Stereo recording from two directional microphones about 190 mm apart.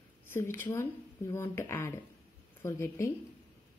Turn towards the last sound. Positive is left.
turn(degrees=15)  # may be behind; listen again after turning